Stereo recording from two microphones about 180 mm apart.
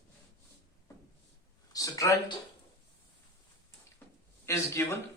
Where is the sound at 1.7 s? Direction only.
20° left (ahead or behind).